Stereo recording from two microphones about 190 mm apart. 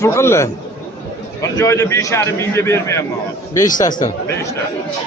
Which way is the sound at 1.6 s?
15° left (ahead or behind).